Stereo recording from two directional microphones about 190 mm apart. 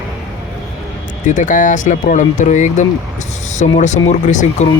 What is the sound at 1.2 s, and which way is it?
Speech, 40° left (ahead or behind).